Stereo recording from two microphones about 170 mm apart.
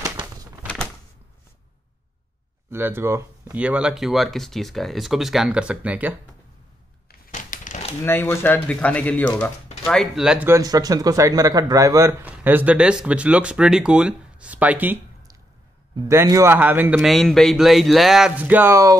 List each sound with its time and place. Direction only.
2.7 s speech: 15° right (ahead or behind)
7.1 s a sound: 50° left (ahead or behind)
8.0 s speech: 15° left (ahead or behind); by 10.5 s 5° right (ahead or behind)
10.5 s speech: 20° right (ahead or behind)
16.1 s speech: 15° right (ahead or behind)
17.1 s speech: centre (ahead or behind); by 18.9 s 15° right (ahead or behind)